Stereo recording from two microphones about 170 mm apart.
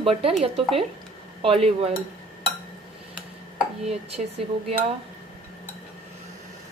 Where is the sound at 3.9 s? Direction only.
40° right (ahead or behind).